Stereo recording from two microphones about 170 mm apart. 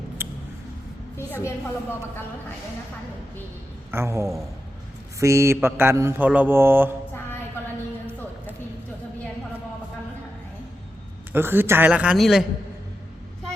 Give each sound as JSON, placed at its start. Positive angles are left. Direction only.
{"t": 0.2, "sound": "a sound", "side_deg": -10}
{"t": 1.1, "sound": "a woman's voice", "side_deg": 15}
{"t": 3.9, "sound": "mantra", "side_deg": -15}
{"t": 11.3, "sound": "mantra", "side_deg": -10}